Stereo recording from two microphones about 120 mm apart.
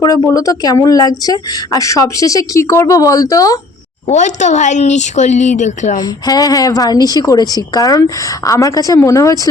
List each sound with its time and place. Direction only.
0.0 s speech: 30° left (ahead or behind)
4.1 s speech: 75° left (ahead or behind)
6.0 s a woman's voice: 30° left (ahead or behind)